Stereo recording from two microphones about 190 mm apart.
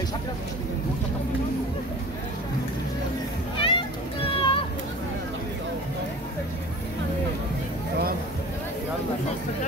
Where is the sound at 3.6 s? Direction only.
25° left (ahead or behind).